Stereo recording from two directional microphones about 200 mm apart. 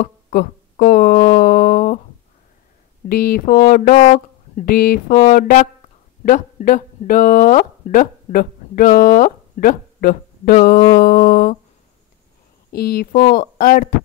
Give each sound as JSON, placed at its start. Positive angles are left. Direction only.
{"t": 0.0, "sound": "speech", "side_deg": 45}
{"t": 3.1, "sound": "speech", "side_deg": 45}
{"t": 12.7, "sound": "speech", "side_deg": 50}